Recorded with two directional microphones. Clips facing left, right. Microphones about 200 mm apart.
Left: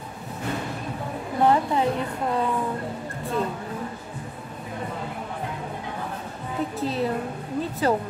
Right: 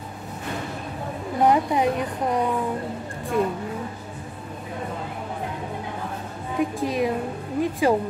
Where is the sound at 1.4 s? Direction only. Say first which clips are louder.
Right 1 dB; 15° right (ahead or behind).